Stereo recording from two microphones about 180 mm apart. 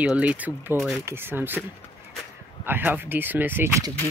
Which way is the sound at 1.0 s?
10° right (ahead or behind).